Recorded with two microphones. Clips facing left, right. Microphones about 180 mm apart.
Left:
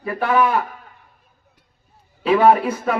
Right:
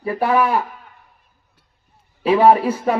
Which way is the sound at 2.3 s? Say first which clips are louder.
Right 1 dB; 30° right (ahead or behind).